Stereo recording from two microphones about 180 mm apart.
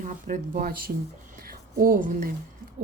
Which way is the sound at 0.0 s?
45° right (ahead or behind).